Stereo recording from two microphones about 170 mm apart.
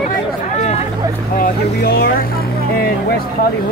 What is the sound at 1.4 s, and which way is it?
Speech, 60° left (ahead or behind).